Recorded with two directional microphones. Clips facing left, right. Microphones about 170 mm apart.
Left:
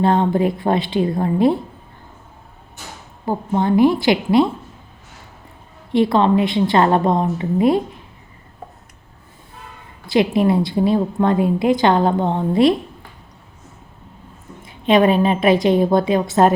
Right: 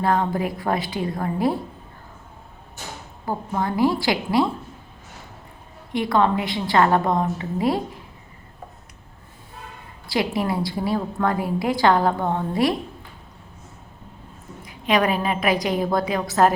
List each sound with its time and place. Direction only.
0.0 s a woman's voice: 25° left (ahead or behind)
3.2 s a woman's voice: 25° left (ahead or behind)
5.9 s a woman's voice: 25° left (ahead or behind)
10.1 s a woman's voice: 25° left (ahead or behind)
14.6 s a woman's voice: 25° left (ahead or behind)